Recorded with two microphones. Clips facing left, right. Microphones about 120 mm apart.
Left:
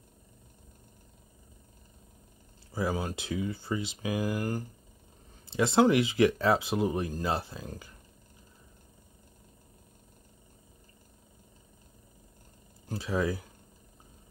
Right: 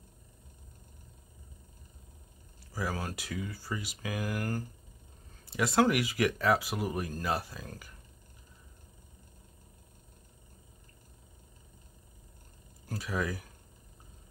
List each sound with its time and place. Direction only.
2.7 s speech: 25° left (ahead or behind)
12.8 s speech: 25° left (ahead or behind)